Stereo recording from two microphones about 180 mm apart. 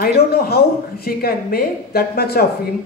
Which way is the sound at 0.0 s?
60° left (ahead or behind).